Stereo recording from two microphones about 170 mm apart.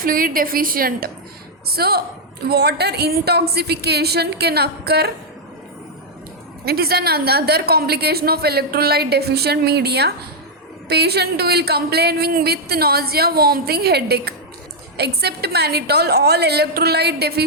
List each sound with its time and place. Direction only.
0.0 s a woman's voice: 55° right (ahead or behind)
6.7 s a woman's voice: 65° right (ahead or behind)